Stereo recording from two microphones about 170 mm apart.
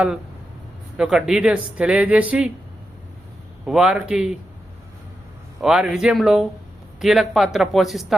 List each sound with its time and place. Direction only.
0.9 s speech: 5° right (ahead or behind)
3.7 s speech: 5° right (ahead or behind)
5.6 s speech: 5° right (ahead or behind)